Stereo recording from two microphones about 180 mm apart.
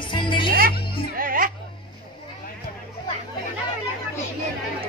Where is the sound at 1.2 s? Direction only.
50° right (ahead or behind).